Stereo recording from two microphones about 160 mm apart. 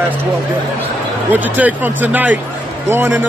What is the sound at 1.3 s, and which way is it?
Speech, 10° right (ahead or behind).